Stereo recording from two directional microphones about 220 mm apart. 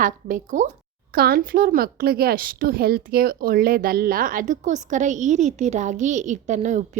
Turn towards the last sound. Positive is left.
turn(degrees=-35)  # may be behind; listen again after turning